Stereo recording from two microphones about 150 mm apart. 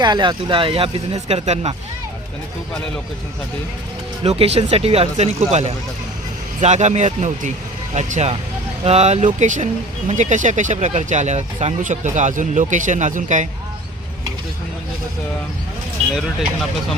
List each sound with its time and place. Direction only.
0.0 s speech: 30° right (ahead or behind); by 1.7 s 45° right (ahead or behind)
4.2 s speech: 40° right (ahead or behind); by 13.5 s 55° right (ahead or behind)
16.1 s speech: centre (ahead or behind)